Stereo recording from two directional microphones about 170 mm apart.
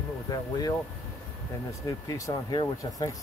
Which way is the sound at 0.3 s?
20° left (ahead or behind).